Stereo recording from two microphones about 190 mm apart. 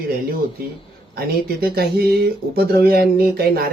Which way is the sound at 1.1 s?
55° right (ahead or behind).